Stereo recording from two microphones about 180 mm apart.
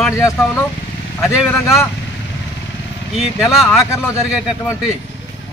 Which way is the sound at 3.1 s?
Centre (ahead or behind).